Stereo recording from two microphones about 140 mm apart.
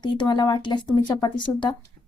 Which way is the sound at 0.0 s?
30° left (ahead or behind).